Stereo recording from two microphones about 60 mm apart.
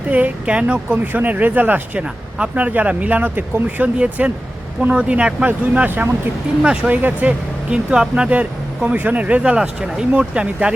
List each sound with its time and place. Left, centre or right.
0.1 s speech: right
1.0 s speech: right